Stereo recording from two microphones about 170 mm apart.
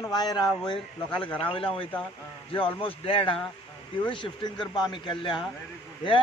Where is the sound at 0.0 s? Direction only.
25° left (ahead or behind).